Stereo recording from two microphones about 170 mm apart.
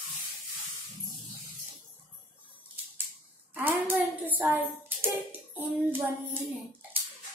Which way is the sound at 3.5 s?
10° right (ahead or behind).